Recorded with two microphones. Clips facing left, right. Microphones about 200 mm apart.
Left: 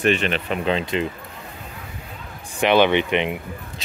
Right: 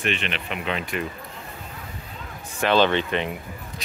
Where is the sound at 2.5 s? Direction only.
15° left (ahead or behind).